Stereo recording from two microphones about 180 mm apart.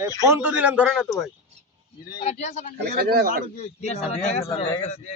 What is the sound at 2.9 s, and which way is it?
Speech, 60° right (ahead or behind).